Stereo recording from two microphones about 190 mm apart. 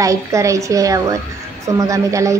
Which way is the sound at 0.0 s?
15° right (ahead or behind).